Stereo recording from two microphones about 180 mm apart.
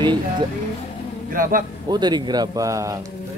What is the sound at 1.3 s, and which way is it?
Speech, 50° right (ahead or behind).